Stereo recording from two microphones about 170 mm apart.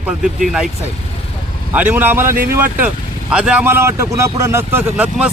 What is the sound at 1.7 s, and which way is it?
Speech, 10° right (ahead or behind).